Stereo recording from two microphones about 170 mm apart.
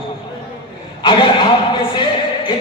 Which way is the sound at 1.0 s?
30° left (ahead or behind).